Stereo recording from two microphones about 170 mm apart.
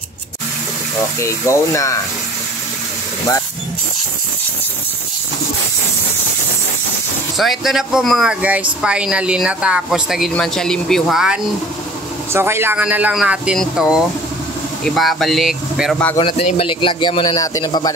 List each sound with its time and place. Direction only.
1.2 s speech: 15° left (ahead or behind)
7.3 s speech: centre (ahead or behind)
12.3 s speech: 15° right (ahead or behind)
16.2 s a man's voice: 30° left (ahead or behind)